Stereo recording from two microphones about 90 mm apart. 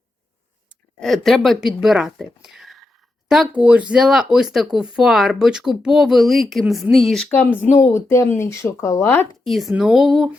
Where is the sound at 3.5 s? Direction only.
15° right (ahead or behind).